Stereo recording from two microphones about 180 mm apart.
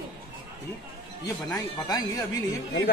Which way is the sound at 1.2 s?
20° left (ahead or behind).